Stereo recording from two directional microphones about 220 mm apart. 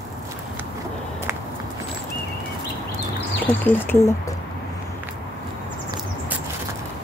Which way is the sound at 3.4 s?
5° left (ahead or behind).